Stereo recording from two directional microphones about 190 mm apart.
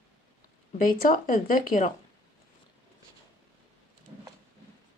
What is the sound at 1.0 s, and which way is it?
Speech, 45° left (ahead or behind).